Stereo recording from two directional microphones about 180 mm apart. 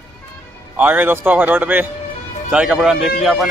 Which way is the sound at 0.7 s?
10° right (ahead or behind).